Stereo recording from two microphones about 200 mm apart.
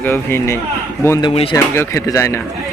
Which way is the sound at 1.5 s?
15° left (ahead or behind).